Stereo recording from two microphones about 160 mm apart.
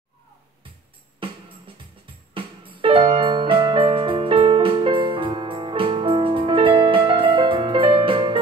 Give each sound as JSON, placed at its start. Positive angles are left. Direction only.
{"t": 1.2, "sound": "music", "side_deg": -35}